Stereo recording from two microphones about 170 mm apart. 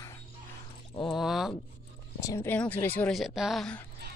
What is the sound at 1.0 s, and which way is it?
Speech, centre (ahead or behind).